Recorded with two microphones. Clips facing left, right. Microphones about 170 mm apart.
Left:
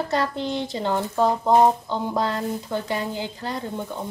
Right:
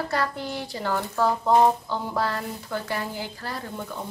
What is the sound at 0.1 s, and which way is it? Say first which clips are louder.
Speech: left 4 dB; 20° left (ahead or behind).